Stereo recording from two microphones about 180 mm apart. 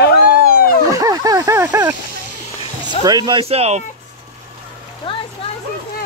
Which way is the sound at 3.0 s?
25° right (ahead or behind).